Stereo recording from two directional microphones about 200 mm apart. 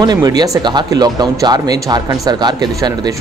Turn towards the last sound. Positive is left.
turn(degrees=-20)  # may be behind; listen again after turning